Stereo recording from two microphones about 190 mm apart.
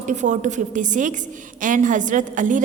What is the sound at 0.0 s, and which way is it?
A woman's voice, 40° right (ahead or behind).